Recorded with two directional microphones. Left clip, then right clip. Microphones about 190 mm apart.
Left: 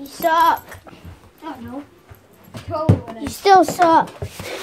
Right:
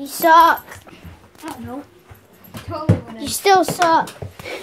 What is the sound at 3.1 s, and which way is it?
Speech, 20° right (ahead or behind).